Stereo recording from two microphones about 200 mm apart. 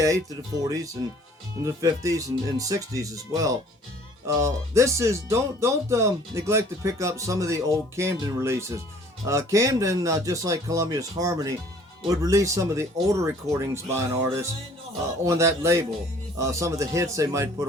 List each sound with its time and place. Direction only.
1.6 s speech: 15° right (ahead or behind)